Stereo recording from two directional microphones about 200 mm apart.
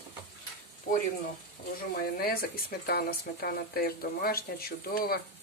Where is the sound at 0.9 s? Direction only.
45° left (ahead or behind).